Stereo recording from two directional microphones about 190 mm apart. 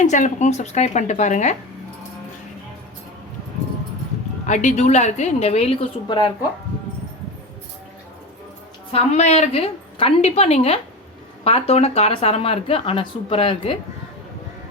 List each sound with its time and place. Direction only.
0.0 s a woman's voice: 40° left (ahead or behind)
4.4 s a woman's voice: 40° left (ahead or behind); by 6.3 s 25° left (ahead or behind)
8.9 s a woman's voice: 35° left (ahead or behind)